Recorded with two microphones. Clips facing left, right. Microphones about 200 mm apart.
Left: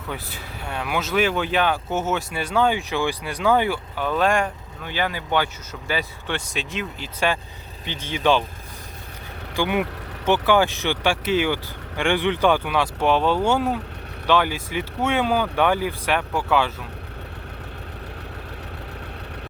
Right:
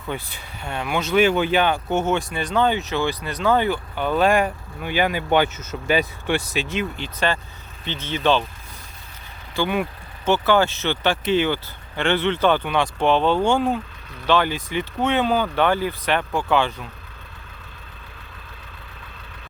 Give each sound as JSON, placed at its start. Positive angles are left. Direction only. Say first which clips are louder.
{"t": 0.1, "sound": "speech", "louder": "right 3 dB", "side_deg": 5}
{"t": 9.6, "sound": "speech", "louder": "even", "side_deg": 15}